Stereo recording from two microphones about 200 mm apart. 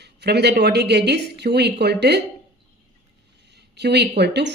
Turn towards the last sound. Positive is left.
turn(degrees=-55)  # may be behind; listen again after turning